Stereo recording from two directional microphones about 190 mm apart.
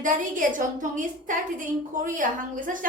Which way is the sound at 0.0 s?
45° right (ahead or behind).